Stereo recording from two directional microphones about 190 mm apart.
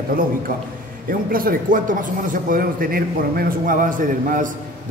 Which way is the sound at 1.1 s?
50° right (ahead or behind).